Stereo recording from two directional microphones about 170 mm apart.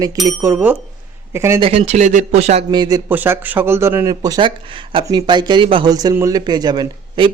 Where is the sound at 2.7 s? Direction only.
25° right (ahead or behind).